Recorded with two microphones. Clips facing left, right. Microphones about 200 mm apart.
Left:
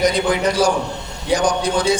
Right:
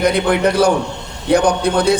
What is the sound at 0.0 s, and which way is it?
A man's voice, 60° right (ahead or behind).